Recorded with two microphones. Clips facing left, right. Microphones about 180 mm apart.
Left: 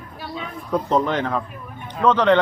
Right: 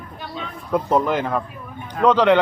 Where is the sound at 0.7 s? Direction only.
10° right (ahead or behind).